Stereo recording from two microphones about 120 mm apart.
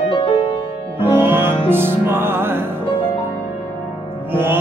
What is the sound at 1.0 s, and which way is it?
Music, 20° right (ahead or behind).